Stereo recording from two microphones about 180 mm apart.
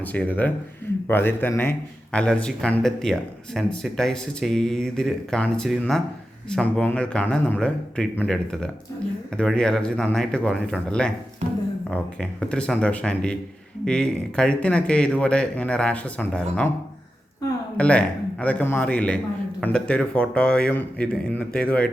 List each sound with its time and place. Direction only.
0.0 s a man's voice: 10° left (ahead or behind)
12.5 s speech: 5° left (ahead or behind)
17.7 s a man's voice: 5° left (ahead or behind)